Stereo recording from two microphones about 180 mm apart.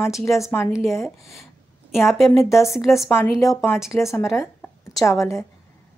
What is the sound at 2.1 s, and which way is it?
A woman's voice, centre (ahead or behind).